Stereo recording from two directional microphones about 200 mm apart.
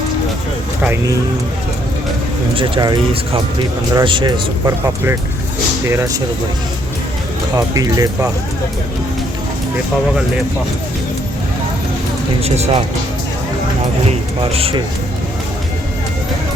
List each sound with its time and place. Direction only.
0.8 s speech: 10° right (ahead or behind)
2.6 s a man's voice: 25° right (ahead or behind)
7.5 s speech: 15° right (ahead or behind)
12.4 s speech: 30° right (ahead or behind)
14.0 s a man's voice: 30° right (ahead or behind)